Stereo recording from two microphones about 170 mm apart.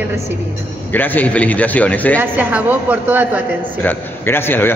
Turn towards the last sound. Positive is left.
turn(degrees=15)  # may be behind; listen again after turning